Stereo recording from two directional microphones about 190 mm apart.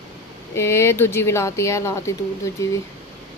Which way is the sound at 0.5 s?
15° left (ahead or behind).